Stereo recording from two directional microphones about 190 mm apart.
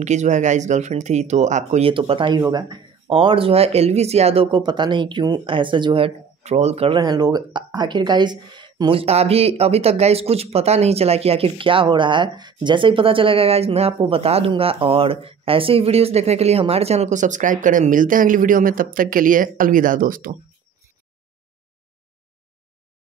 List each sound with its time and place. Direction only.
0.0 s speech: 40° right (ahead or behind)